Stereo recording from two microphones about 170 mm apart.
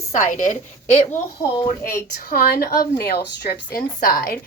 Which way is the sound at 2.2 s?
60° left (ahead or behind).